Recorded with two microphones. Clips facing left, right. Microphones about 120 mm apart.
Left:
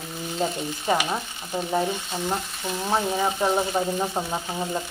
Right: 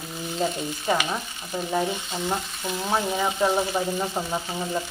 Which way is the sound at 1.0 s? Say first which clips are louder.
Left 1 dB; 15° left (ahead or behind).